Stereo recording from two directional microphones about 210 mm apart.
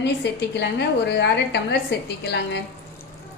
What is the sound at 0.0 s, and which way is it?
A woman's voice, 55° left (ahead or behind).